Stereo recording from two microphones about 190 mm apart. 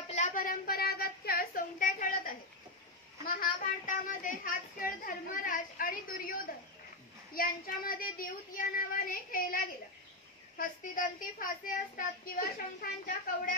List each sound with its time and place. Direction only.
0.1 s a sound: 40° left (ahead or behind)
3.3 s speech: 45° left (ahead or behind)
7.3 s speech: 50° left (ahead or behind)
10.6 s speech: 45° left (ahead or behind)